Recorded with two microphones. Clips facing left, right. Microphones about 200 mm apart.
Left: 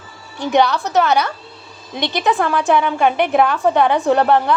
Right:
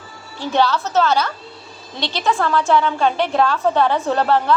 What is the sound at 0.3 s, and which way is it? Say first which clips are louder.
A woman's voice: left 3 dB; 15° left (ahead or behind).